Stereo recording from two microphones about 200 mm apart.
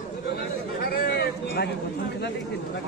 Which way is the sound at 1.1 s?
55° left (ahead or behind).